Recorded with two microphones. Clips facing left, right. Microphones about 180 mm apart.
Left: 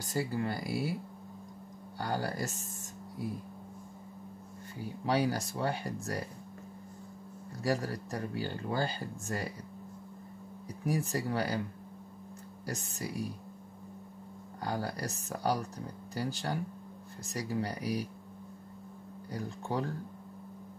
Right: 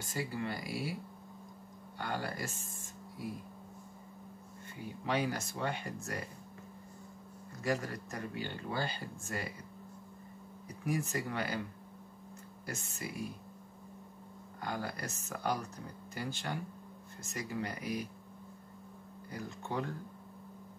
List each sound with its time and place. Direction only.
0.0 s speech: 40° left (ahead or behind)
2.0 s speech: 35° left (ahead or behind)
5.0 s speech: 35° left (ahead or behind)
7.6 s speech: 35° left (ahead or behind)
10.9 s speech: 35° left (ahead or behind)
12.6 s speech: 35° left (ahead or behind)
14.6 s speech: 35° left (ahead or behind)
19.3 s speech: 35° left (ahead or behind)